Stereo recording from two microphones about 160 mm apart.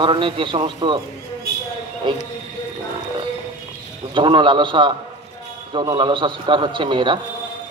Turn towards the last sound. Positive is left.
turn(degrees=-30)  # may be behind; listen again after turning